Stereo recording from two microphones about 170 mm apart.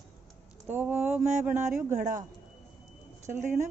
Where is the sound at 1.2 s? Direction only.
45° right (ahead or behind).